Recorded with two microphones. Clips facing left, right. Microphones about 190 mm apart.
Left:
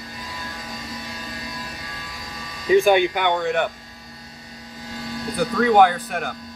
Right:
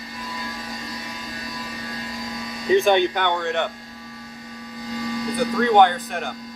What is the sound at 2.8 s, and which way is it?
Speech, 10° left (ahead or behind).